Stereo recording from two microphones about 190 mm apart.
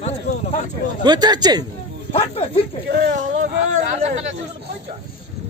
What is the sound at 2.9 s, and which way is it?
Speech, 50° right (ahead or behind).